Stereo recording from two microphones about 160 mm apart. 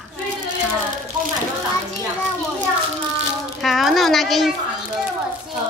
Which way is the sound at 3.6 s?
Centre (ahead or behind).